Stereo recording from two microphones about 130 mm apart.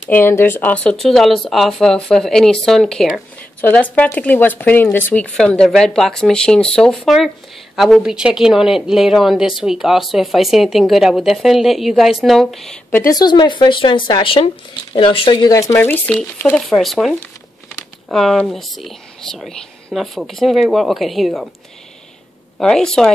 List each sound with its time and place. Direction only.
0.1 s speech: 15° left (ahead or behind)
13.1 s speech: 35° left (ahead or behind)
15.7 s speech: 15° left (ahead or behind); by 21.5 s centre (ahead or behind)
22.6 s speech: 5° left (ahead or behind)